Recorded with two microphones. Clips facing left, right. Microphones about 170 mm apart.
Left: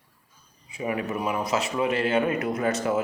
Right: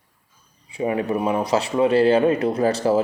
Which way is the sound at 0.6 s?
30° right (ahead or behind).